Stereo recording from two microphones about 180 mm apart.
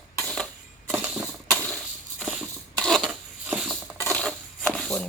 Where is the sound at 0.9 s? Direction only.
10° right (ahead or behind).